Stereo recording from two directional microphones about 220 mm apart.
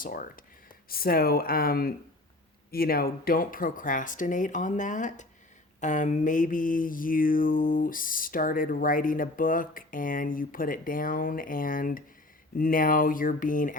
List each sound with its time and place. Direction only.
0.0 s mantra: 40° left (ahead or behind)
0.9 s speech: 40° left (ahead or behind)
2.6 s mantra: 45° left (ahead or behind)